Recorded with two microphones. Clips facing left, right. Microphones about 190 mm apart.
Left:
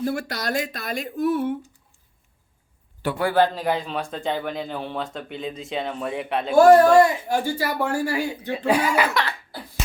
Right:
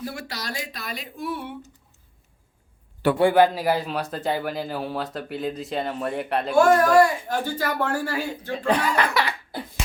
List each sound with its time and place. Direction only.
0.0 s speech: 50° left (ahead or behind)
3.2 s a man's voice: 10° right (ahead or behind)
6.6 s speech: 35° left (ahead or behind)
7.3 s speech: 10° left (ahead or behind)